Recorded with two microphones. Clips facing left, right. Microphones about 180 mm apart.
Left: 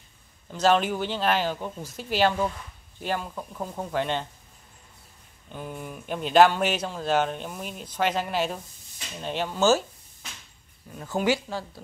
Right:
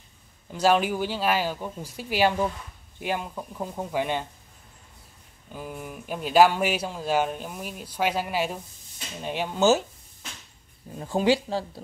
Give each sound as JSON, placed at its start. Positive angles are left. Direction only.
{"t": 0.5, "sound": "speech", "side_deg": -10}
{"t": 5.5, "sound": "speech", "side_deg": -5}
{"t": 10.9, "sound": "speech", "side_deg": -25}